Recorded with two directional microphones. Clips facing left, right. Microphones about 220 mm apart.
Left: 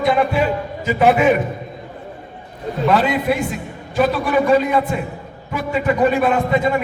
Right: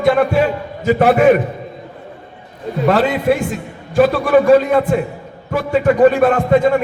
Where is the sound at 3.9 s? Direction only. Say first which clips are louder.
Right 5 dB; 45° right (ahead or behind).